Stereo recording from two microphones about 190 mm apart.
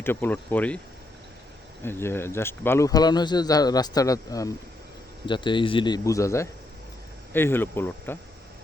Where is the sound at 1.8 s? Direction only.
10° left (ahead or behind).